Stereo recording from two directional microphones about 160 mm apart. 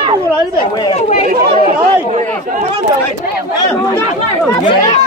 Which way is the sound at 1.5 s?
40° right (ahead or behind).